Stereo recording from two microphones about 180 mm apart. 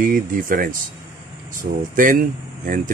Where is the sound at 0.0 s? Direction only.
50° right (ahead or behind).